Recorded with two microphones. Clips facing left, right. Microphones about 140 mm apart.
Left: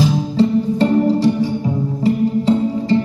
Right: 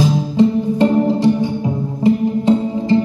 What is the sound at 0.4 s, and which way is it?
Music, 20° right (ahead or behind).